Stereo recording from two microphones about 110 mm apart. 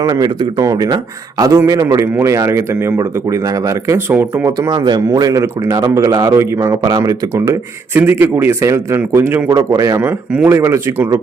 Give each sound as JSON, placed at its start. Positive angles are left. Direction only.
{"t": 0.0, "sound": "a man's voice", "side_deg": -35}
{"t": 4.1, "sound": "speech", "side_deg": -15}
{"t": 4.4, "sound": "a man's voice", "side_deg": -30}
{"t": 4.7, "sound": "a man's voice", "side_deg": -40}
{"t": 10.0, "sound": "a man's voice", "side_deg": -15}